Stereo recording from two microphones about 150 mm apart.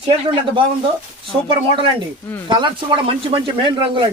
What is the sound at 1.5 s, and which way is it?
Speech, 35° right (ahead or behind).